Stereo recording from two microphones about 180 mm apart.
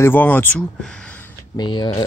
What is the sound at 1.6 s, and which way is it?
Speech, 25° left (ahead or behind).